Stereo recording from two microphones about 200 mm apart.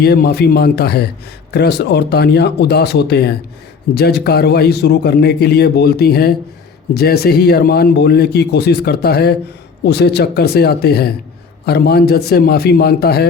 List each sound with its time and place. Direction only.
0.0 s a man's voice: 50° left (ahead or behind)